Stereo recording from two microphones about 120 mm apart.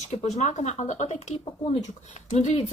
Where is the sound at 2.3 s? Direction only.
65° left (ahead or behind).